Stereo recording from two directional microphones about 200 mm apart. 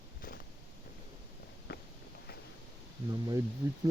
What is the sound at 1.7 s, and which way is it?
Walk, 50° left (ahead or behind).